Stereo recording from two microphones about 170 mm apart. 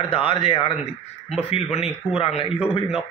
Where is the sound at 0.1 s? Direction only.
30° left (ahead or behind).